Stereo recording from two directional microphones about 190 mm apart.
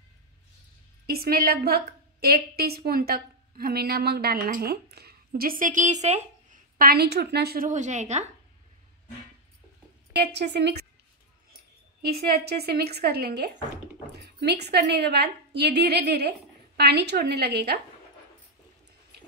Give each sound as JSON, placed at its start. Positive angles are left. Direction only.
{"t": 1.0, "sound": "a woman's voice", "side_deg": -55}
{"t": 6.8, "sound": "a woman's voice", "side_deg": -55}
{"t": 10.1, "sound": "a woman's voice", "side_deg": -60}
{"t": 12.0, "sound": "a woman's voice", "side_deg": -55}